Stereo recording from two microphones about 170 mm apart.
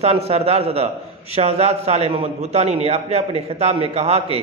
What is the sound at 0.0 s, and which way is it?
A man's voice, 35° right (ahead or behind).